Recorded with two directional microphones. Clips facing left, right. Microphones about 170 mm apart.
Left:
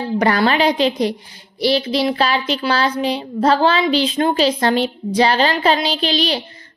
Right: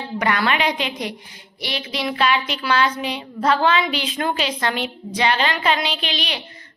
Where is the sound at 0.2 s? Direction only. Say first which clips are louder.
Left 5 dB; 35° left (ahead or behind).